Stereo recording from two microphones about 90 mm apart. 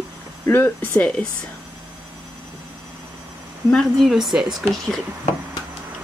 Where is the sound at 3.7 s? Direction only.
Centre (ahead or behind).